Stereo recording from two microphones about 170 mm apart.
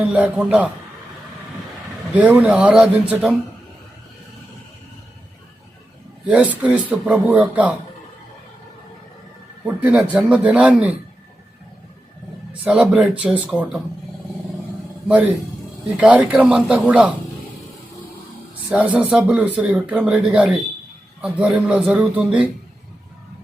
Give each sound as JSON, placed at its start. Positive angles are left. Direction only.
{"t": 0.0, "sound": "speech", "side_deg": -5}
{"t": 2.1, "sound": "speech", "side_deg": -10}
{"t": 6.2, "sound": "speech", "side_deg": -10}
{"t": 9.6, "sound": "speech", "side_deg": -10}
{"t": 12.6, "sound": "speech", "side_deg": -5}
{"t": 15.0, "sound": "a man's voice", "side_deg": -10}
{"t": 18.7, "sound": "speech", "side_deg": -5}